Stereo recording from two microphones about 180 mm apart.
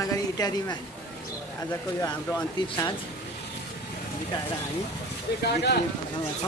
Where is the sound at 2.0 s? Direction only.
10° left (ahead or behind).